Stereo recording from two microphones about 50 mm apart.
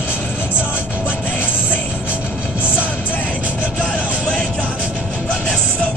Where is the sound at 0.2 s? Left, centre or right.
Left.